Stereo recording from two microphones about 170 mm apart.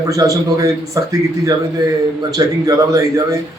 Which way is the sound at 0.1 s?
20° right (ahead or behind).